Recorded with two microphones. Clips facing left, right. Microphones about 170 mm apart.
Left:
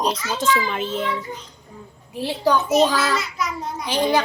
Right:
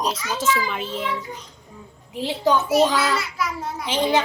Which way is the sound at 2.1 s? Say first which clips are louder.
Even; 20° right (ahead or behind).